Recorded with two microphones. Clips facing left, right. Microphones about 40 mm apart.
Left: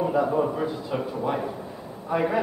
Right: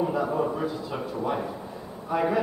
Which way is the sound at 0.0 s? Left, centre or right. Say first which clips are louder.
Left 3 dB; centre.